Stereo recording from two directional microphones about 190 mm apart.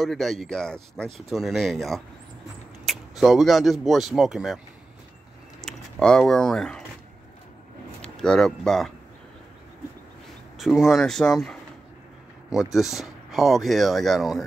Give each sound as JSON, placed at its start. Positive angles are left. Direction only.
{"t": 0.0, "sound": "speech", "side_deg": 0}
{"t": 5.6, "sound": "speech", "side_deg": 0}
{"t": 8.0, "sound": "speech", "side_deg": 5}
{"t": 10.6, "sound": "speech", "side_deg": 0}